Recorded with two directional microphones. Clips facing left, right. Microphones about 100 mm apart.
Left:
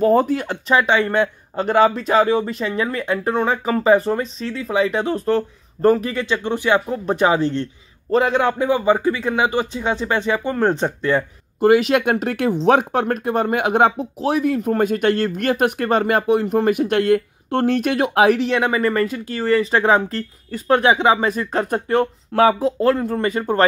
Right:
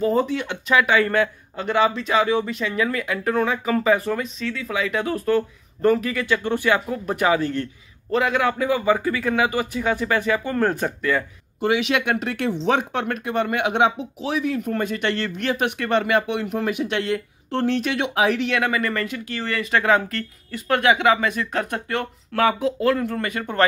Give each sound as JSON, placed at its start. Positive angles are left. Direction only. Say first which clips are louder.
{"t": 0.0, "sound": "speech", "louder": "left 5 dB", "side_deg": 50}
{"t": 1.6, "sound": "speech", "louder": "left 5 dB", "side_deg": 45}
{"t": 11.6, "sound": "speech", "louder": "left 6 dB", "side_deg": 45}
{"t": 18.6, "sound": "speech", "louder": "left 5 dB", "side_deg": 30}